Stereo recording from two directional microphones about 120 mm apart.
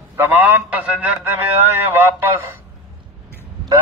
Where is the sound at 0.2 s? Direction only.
15° right (ahead or behind).